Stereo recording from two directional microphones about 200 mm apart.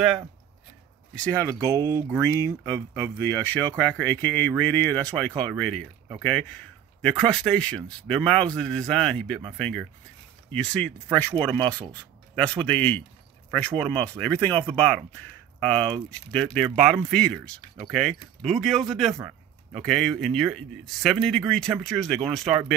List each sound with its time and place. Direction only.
1.1 s speech: 10° left (ahead or behind)
1.8 s speech: 15° right (ahead or behind)
2.0 s speech: 10° left (ahead or behind)